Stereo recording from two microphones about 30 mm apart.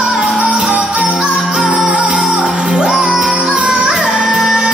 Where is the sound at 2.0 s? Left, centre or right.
Right.